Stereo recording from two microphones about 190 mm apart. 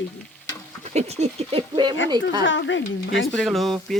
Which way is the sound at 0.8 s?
35° right (ahead or behind).